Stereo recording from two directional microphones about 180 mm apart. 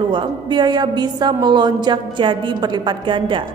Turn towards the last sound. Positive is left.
turn(degrees=-25)  # may be behind; listen again after turning